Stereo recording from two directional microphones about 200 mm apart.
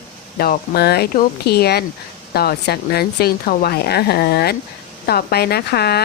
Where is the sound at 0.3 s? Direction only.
50° left (ahead or behind).